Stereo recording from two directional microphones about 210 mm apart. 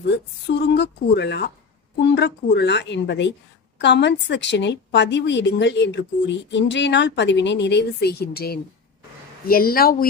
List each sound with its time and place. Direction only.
0.7 s a woman's voice: 55° left (ahead or behind)